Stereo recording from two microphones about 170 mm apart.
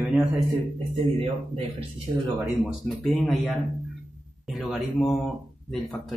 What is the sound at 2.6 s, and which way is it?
Speech, centre (ahead or behind).